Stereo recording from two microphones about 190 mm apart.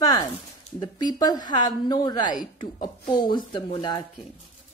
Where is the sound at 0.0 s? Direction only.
20° left (ahead or behind).